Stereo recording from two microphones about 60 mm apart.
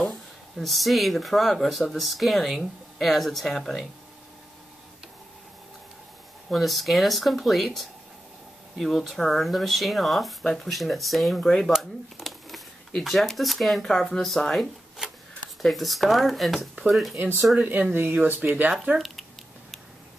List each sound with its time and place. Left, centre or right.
0.0 s speech: centre
6.5 s speech: centre
17.2 s speech: right
17.6 s speech: right
18.9 s a sound: centre